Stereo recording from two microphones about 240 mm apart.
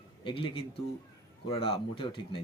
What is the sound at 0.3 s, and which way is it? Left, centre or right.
Speech, left.